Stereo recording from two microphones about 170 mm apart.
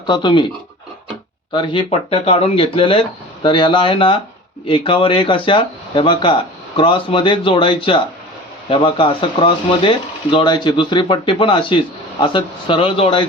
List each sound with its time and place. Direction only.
0.1 s speech: 30° left (ahead or behind)
1.5 s speech: 30° left (ahead or behind)